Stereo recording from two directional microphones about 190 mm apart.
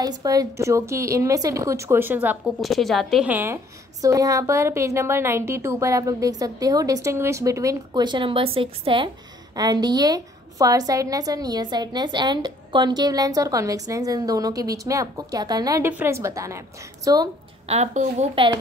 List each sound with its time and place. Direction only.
0.0 s a woman's voice: 20° right (ahead or behind)
17.6 s a woman's voice: 35° right (ahead or behind)